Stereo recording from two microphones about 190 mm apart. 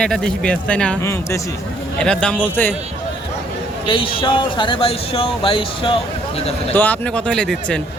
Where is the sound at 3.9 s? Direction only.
25° left (ahead or behind).